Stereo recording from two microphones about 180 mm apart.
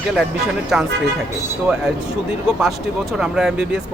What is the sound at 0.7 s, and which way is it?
Speech, centre (ahead or behind).